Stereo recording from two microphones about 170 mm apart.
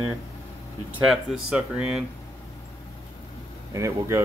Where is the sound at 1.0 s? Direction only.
5° right (ahead or behind).